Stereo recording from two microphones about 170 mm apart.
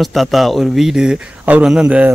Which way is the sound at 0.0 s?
Centre (ahead or behind).